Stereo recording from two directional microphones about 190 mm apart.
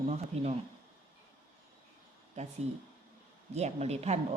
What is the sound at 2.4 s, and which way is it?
Speech, 40° right (ahead or behind).